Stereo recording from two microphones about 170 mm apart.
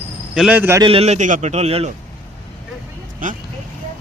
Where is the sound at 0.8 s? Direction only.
35° right (ahead or behind).